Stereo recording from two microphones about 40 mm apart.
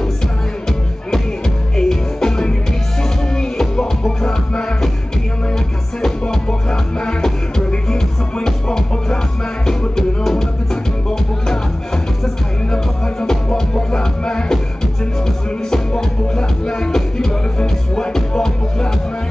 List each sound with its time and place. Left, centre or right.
1.8 s music: centre
6.2 s music: centre
12.7 s music: left
15.7 s music: centre